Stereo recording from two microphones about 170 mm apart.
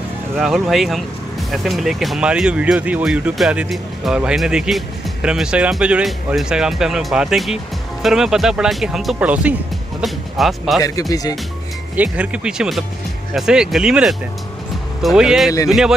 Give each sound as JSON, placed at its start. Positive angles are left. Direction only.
{"t": 0.4, "sound": "speech", "side_deg": 0}
{"t": 10.8, "sound": "speech", "side_deg": 20}
{"t": 11.9, "sound": "speech", "side_deg": -10}